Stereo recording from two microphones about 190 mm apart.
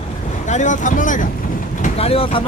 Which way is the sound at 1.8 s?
30° left (ahead or behind).